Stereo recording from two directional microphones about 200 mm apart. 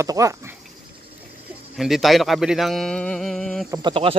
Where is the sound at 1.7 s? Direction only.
Centre (ahead or behind).